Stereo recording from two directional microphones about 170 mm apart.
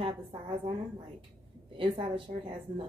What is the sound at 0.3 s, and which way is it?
Speech, 30° right (ahead or behind).